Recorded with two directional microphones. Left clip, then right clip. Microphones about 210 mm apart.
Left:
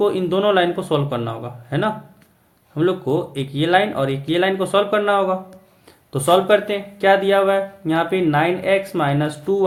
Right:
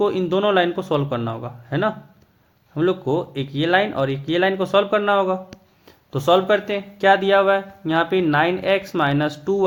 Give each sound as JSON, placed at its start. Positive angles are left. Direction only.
{"t": 0.0, "sound": "speech", "side_deg": -35}